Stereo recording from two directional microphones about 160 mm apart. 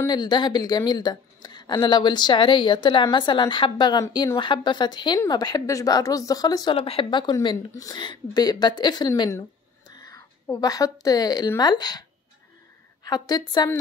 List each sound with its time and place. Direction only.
0.0 s a woman's voice: 25° left (ahead or behind)
13.0 s a woman's voice: 25° left (ahead or behind)